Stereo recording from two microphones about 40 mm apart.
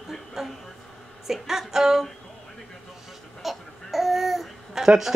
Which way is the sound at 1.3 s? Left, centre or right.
Centre.